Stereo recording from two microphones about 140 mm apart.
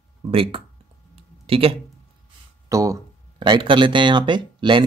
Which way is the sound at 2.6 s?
20° right (ahead or behind).